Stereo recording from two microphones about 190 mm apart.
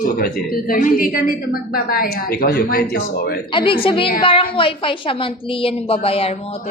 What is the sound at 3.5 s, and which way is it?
A woman's voice, 30° left (ahead or behind).